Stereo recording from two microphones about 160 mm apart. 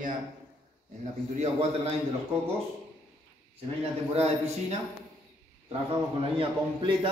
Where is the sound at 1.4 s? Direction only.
40° right (ahead or behind).